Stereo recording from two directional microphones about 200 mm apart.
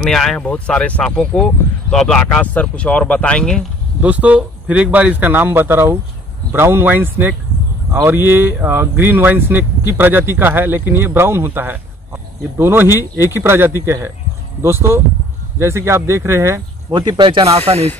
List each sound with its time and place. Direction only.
0.0 s speech: centre (ahead or behind)
4.0 s speech: 5° right (ahead or behind); by 17.8 s 30° right (ahead or behind)